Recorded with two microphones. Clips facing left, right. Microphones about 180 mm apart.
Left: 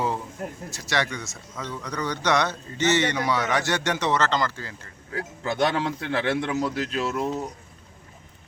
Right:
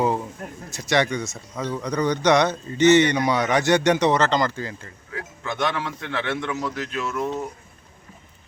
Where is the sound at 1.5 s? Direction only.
40° right (ahead or behind).